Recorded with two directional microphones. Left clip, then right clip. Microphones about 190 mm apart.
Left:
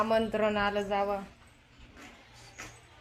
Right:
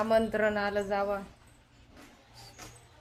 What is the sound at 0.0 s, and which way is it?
A woman's voice, 10° left (ahead or behind).